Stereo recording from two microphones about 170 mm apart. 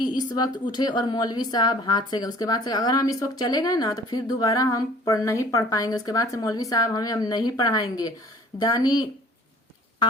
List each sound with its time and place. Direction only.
0.3 s a woman's voice: 25° left (ahead or behind)